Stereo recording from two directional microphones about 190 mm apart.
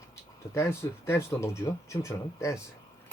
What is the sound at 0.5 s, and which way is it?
Speech, 15° left (ahead or behind).